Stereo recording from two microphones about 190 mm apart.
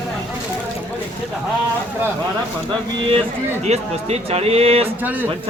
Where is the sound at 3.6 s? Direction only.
35° right (ahead or behind).